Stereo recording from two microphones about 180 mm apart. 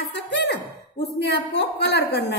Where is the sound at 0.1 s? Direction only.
70° left (ahead or behind).